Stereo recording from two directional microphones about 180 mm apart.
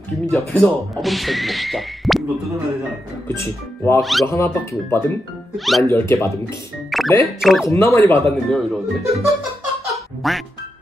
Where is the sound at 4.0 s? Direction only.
Centre (ahead or behind).